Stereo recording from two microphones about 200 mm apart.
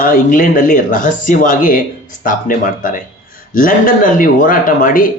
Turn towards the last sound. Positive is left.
turn(degrees=45)  # may be behind; listen again after turning